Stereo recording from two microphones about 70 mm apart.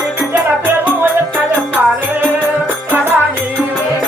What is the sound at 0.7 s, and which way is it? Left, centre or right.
Music, right.